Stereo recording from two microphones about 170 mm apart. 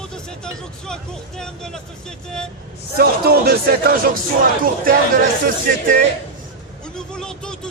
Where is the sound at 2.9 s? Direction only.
65° right (ahead or behind).